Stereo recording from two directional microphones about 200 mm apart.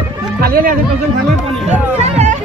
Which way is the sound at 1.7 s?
35° right (ahead or behind).